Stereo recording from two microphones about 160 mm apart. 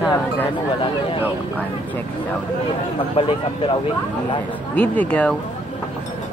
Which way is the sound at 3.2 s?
35° left (ahead or behind).